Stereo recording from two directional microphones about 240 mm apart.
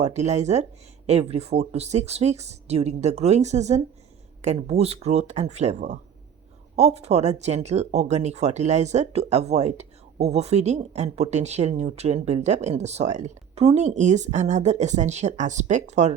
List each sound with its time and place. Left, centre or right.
0.0 s speech: right